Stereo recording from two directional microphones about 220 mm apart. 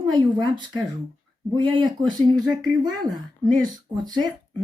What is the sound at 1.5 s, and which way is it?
Speech, 20° right (ahead or behind).